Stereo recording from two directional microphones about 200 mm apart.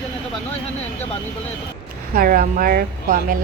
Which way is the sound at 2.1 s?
45° right (ahead or behind).